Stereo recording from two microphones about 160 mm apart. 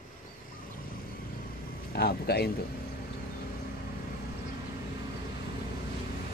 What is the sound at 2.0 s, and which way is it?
Speech, 90° left.